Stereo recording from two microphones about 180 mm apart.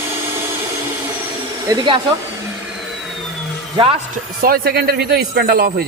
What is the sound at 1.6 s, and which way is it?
Speech, 20° right (ahead or behind).